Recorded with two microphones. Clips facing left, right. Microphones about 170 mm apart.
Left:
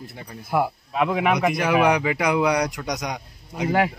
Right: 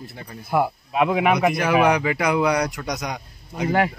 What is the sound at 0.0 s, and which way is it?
Speech, 15° left (ahead or behind).